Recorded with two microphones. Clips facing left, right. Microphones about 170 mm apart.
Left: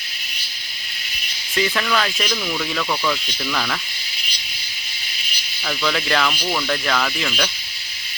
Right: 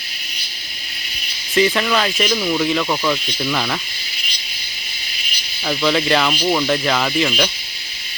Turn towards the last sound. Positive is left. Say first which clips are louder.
# right 5 dB
turn(degrees=-15)  # may be behind; listen again after turning